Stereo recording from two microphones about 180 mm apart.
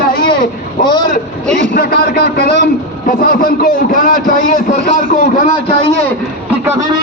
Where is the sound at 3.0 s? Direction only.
50° left (ahead or behind).